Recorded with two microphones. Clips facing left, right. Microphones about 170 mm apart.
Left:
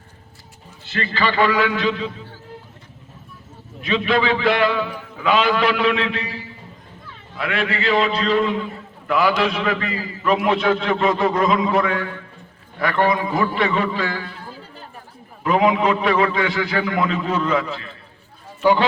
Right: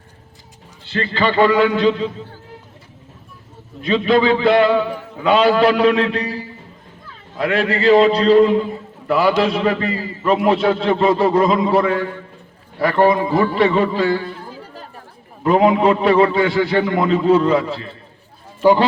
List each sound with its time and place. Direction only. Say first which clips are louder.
1.1 s a man's voice: right 4 dB; 25° right (ahead or behind)
3.8 s a man's voice: right 5 dB; 30° right (ahead or behind)
15.4 s a man's voice: right 4 dB; 35° right (ahead or behind)